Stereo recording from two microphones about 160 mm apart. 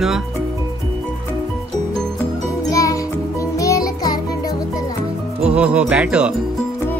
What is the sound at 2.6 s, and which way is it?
Music, 20° left (ahead or behind).